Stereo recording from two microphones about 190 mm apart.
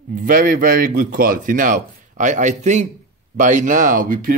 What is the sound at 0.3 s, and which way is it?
Speech, 45° right (ahead or behind).